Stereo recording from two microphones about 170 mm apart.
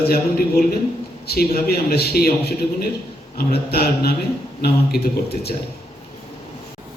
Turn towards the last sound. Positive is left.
turn(degrees=65)  # may be behind; listen again after turning